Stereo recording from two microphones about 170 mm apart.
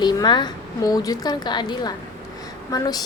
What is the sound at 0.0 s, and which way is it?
A woman's voice, 25° left (ahead or behind).